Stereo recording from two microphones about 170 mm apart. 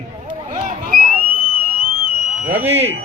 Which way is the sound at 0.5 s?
50° right (ahead or behind).